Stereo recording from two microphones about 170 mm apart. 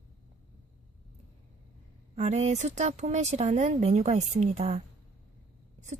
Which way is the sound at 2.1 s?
40° right (ahead or behind).